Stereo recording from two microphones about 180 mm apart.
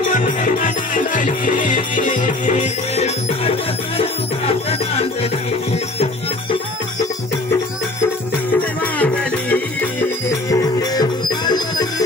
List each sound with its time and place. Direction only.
0.0 s music: 45° left (ahead or behind)
8.9 s music: 10° left (ahead or behind)
10.0 s music: 20° left (ahead or behind)